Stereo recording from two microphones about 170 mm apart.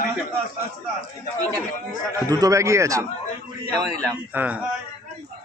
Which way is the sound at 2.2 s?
20° right (ahead or behind).